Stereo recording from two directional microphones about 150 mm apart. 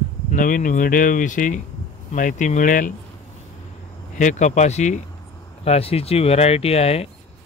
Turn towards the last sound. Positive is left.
turn(degrees=45)  # may be behind; listen again after turning